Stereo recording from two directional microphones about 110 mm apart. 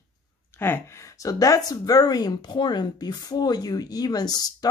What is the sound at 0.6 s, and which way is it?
Speech, 20° left (ahead or behind).